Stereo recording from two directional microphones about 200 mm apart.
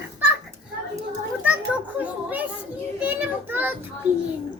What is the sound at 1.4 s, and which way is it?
Children playing, 5° right (ahead or behind).